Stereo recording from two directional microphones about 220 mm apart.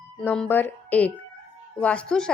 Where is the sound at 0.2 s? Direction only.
5° left (ahead or behind).